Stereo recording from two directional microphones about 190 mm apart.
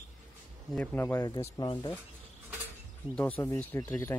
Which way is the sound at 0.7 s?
5° left (ahead or behind).